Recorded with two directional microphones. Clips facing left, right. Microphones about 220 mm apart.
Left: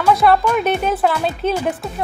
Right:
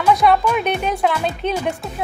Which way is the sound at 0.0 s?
Centre (ahead or behind).